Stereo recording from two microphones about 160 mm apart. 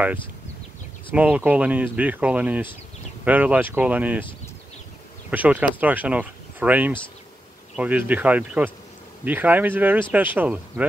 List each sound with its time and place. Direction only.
1.1 s speech: 10° right (ahead or behind)
5.3 s speech: 10° right (ahead or behind)